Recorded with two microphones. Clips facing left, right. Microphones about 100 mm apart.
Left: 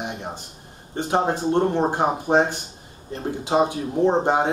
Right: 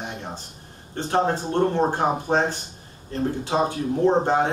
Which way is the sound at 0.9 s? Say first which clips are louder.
Even; 15° left (ahead or behind).